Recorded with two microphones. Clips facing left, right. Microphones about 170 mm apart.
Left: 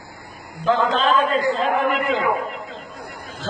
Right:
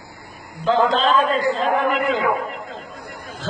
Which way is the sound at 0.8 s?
40° right (ahead or behind).